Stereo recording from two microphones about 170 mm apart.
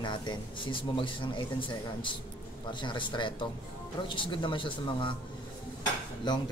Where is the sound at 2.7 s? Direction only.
25° left (ahead or behind).